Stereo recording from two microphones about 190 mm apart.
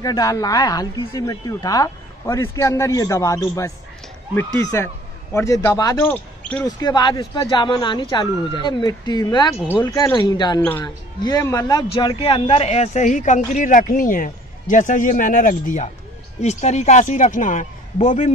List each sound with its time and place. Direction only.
0.0 s a man's voice: 20° left (ahead or behind); by 18.3 s 40° left (ahead or behind)